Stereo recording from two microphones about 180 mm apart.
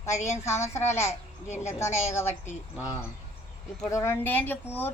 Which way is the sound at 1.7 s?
15° left (ahead or behind).